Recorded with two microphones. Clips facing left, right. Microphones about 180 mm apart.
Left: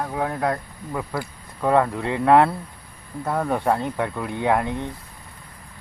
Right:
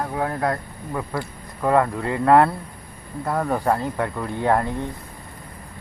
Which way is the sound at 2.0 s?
20° left (ahead or behind).